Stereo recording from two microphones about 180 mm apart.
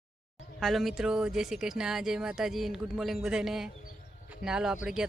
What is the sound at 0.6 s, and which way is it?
Speech, centre (ahead or behind).